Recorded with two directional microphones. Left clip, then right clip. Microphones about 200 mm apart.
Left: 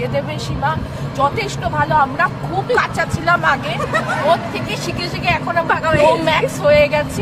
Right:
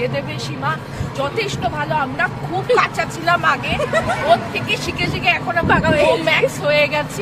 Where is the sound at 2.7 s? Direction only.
20° left (ahead or behind).